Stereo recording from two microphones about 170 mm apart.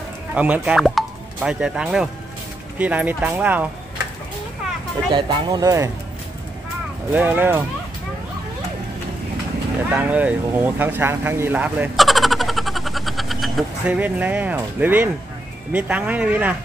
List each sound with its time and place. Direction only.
0.3 s speech: 10° right (ahead or behind)
5.1 s speech: 20° right (ahead or behind)
7.1 s speech: 10° right (ahead or behind)
9.8 s speech: 10° right (ahead or behind)
12.0 s vehicle: centre (ahead or behind)
15.7 s speech: 10° right (ahead or behind)